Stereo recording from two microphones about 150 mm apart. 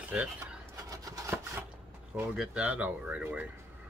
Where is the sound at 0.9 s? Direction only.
25° right (ahead or behind).